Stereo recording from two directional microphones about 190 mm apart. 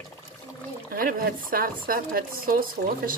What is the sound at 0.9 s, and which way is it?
Speech, 50° right (ahead or behind).